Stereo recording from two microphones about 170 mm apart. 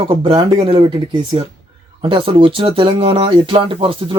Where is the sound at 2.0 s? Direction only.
30° right (ahead or behind).